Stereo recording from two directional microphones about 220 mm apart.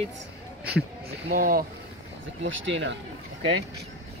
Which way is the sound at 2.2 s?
60° right (ahead or behind).